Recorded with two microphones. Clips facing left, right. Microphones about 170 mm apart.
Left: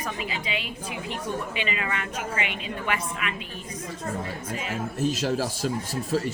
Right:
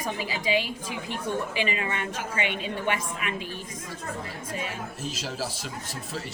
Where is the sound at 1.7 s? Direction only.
30° right (ahead or behind).